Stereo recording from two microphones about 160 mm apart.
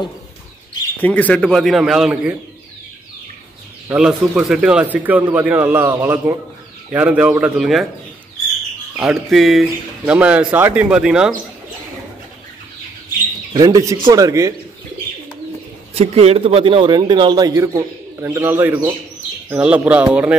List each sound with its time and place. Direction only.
0.9 s speech: 10° left (ahead or behind)
3.9 s speech: 5° right (ahead or behind)
9.0 s speech: centre (ahead or behind)
13.5 s a man's voice: 25° right (ahead or behind)
15.9 s a man's voice: 40° right (ahead or behind); by 20.3 s 10° right (ahead or behind)